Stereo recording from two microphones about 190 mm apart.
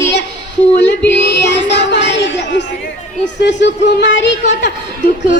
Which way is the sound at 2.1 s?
70° left (ahead or behind).